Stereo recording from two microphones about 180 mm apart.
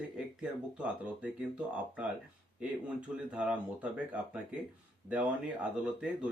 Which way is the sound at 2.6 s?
5° right (ahead or behind).